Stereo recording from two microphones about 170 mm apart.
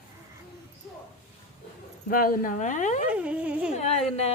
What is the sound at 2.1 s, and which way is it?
Speech, 55° left (ahead or behind).